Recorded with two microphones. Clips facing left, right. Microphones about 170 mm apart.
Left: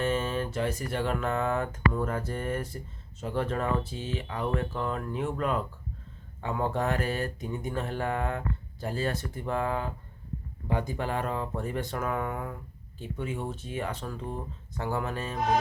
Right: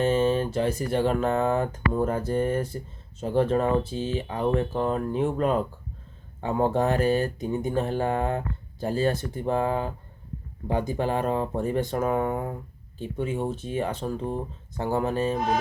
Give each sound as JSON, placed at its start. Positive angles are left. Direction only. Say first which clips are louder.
{"t": 0.0, "sound": "speech", "louder": "right 7 dB", "side_deg": -30}